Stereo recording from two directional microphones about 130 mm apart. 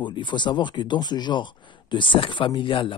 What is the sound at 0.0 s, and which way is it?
Speech, 35° left (ahead or behind).